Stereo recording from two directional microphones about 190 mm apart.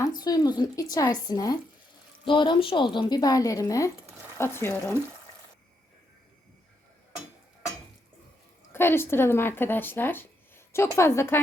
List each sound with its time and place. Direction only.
0.0 s speech: 20° left (ahead or behind)
8.7 s speech: 10° left (ahead or behind)